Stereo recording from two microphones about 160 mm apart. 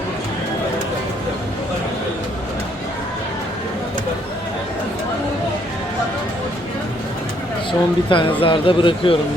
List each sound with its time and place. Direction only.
7.7 s a man's voice: 30° left (ahead or behind)